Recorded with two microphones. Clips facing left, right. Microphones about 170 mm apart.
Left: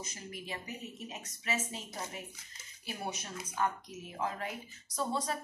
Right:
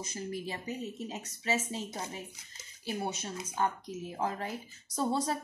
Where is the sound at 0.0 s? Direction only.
30° right (ahead or behind).